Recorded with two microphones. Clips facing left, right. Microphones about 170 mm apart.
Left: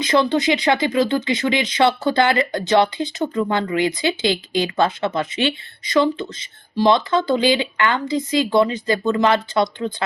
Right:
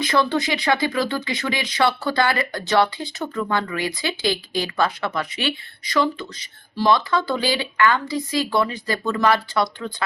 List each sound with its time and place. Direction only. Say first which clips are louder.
0.0 s speech: left 3 dB; 20° left (ahead or behind)